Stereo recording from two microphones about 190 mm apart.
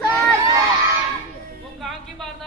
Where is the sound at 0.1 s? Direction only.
20° right (ahead or behind).